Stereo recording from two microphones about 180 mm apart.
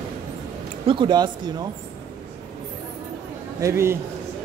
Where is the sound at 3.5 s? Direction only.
15° right (ahead or behind).